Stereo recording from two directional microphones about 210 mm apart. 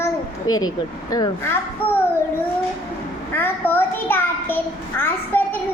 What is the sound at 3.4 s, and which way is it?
A child's voice, 10° left (ahead or behind).